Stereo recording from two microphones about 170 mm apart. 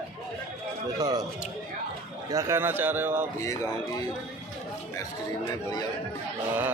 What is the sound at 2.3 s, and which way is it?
Speech, 15° right (ahead or behind).